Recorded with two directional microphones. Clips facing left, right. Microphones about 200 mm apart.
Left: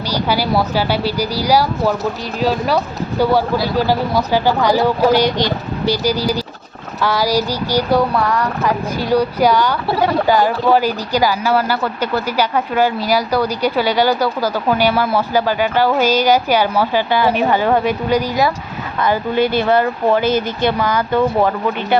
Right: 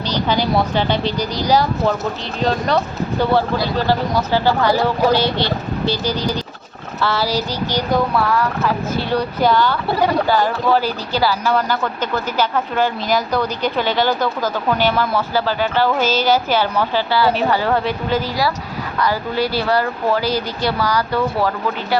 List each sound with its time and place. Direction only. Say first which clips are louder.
0.1 s speech: left 1 dB; 10° left (ahead or behind)